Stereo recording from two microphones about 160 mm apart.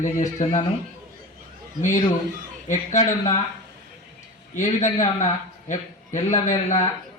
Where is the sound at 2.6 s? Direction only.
45° left (ahead or behind).